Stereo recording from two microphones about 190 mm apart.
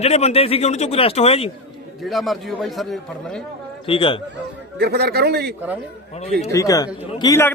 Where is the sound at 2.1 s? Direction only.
Centre (ahead or behind).